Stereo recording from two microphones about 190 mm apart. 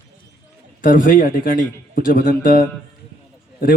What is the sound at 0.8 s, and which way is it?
A man's voice, 45° left (ahead or behind).